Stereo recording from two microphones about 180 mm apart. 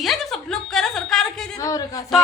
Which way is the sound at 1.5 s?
20° left (ahead or behind).